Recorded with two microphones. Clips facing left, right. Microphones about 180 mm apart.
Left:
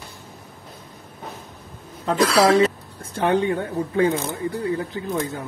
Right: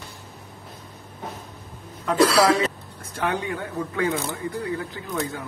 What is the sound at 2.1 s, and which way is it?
Speech, 30° left (ahead or behind).